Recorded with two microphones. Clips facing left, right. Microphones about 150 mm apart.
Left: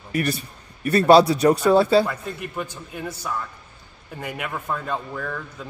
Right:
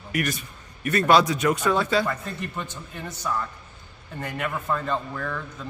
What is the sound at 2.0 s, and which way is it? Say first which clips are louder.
A man's voice: even; 10° left (ahead or behind).